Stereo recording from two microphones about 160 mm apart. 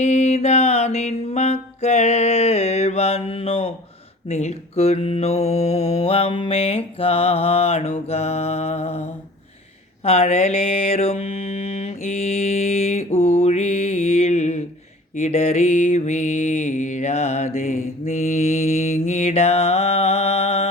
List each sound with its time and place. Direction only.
0.0 s mantra: 45° left (ahead or behind)